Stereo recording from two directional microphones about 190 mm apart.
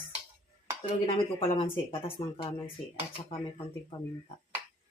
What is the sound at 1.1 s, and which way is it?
Speech, 30° left (ahead or behind).